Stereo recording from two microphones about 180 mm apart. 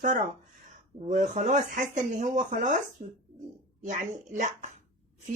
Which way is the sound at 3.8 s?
45° right (ahead or behind).